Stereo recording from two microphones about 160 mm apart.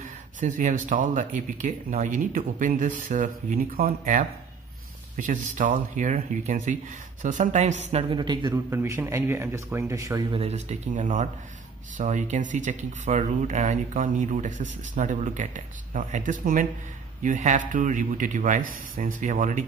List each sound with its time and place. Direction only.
0.4 s speech: 50° right (ahead or behind)
8.2 s speech: 30° right (ahead or behind)
10.3 s speech: 40° right (ahead or behind)